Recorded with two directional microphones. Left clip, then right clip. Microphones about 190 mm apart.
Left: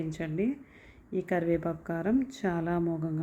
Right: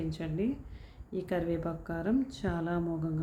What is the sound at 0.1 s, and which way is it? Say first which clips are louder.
Speech: left 3 dB; 20° left (ahead or behind).